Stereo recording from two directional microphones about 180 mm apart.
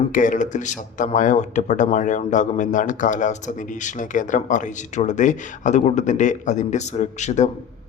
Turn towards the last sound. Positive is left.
turn(degrees=40)  # may be behind; listen again after turning